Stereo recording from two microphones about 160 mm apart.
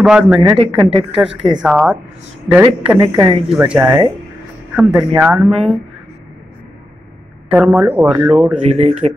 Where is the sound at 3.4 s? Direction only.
5° right (ahead or behind).